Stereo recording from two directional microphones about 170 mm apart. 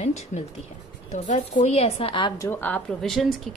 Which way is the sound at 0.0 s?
45° left (ahead or behind).